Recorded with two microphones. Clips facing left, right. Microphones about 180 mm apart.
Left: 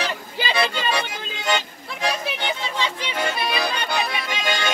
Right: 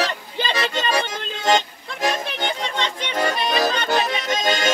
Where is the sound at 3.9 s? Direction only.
45° right (ahead or behind).